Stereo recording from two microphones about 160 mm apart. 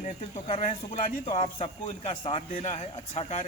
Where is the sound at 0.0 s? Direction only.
45° left (ahead or behind).